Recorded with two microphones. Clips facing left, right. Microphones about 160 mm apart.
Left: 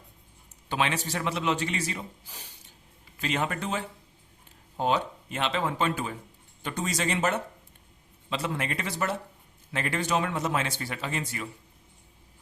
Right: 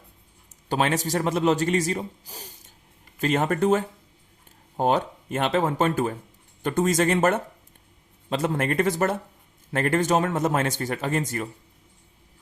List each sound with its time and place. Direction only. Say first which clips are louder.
0.7 s a man's voice: right 5 dB; 40° right (ahead or behind)